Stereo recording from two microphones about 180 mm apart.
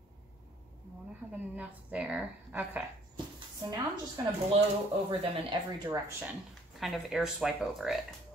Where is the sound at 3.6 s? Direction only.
20° right (ahead or behind).